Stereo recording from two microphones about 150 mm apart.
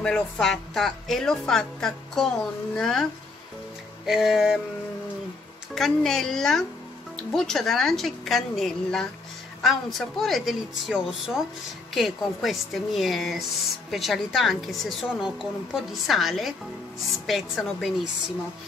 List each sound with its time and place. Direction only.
0.0 s speech: 5° left (ahead or behind)
5.8 s speech: centre (ahead or behind)